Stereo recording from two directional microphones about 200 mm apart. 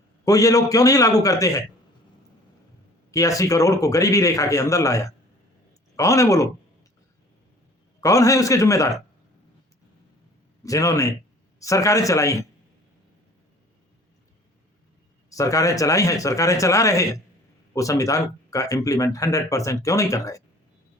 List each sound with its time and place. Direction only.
0.3 s speech: 15° left (ahead or behind)
3.1 s speech: 15° left (ahead or behind)
8.0 s speech: 15° left (ahead or behind)
10.6 s speech: 15° left (ahead or behind)
15.3 s speech: 15° left (ahead or behind)